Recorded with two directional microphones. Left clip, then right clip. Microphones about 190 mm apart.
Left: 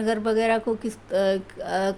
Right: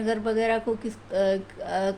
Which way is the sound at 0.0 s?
25° left (ahead or behind).